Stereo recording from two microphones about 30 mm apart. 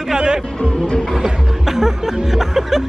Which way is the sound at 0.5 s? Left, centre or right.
Left.